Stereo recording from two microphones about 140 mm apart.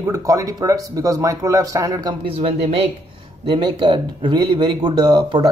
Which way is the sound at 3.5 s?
35° right (ahead or behind).